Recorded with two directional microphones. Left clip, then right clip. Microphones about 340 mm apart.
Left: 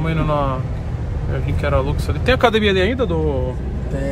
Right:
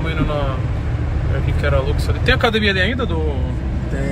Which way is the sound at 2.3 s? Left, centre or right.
Left.